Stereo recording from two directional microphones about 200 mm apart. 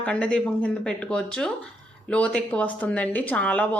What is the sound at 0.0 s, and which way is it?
A woman's voice, 5° left (ahead or behind).